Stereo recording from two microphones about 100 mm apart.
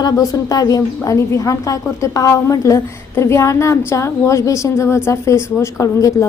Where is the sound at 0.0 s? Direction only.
35° left (ahead or behind).